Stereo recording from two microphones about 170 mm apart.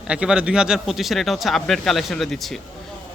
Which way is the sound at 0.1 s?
5° right (ahead or behind).